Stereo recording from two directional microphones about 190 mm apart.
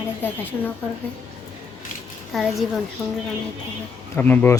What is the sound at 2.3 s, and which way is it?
Child singing, centre (ahead or behind).